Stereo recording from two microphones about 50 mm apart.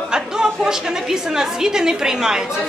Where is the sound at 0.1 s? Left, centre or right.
Centre.